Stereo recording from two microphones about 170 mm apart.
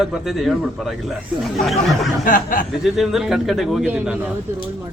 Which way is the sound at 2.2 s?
50° left (ahead or behind).